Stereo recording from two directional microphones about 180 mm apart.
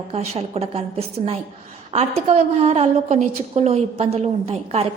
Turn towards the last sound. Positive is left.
turn(degrees=-35)  # may be behind; listen again after turning